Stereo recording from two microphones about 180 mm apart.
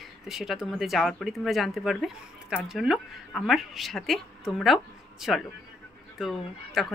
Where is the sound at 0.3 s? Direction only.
Centre (ahead or behind).